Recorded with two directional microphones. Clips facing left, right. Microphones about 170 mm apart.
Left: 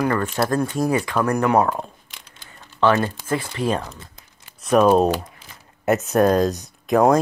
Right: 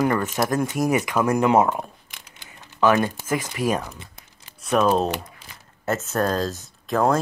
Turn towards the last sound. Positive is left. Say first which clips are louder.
# left 5 dB
turn(degrees=15)  # may be behind; listen again after turning